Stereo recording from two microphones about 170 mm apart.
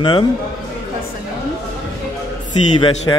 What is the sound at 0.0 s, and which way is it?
Speech, 30° left (ahead or behind).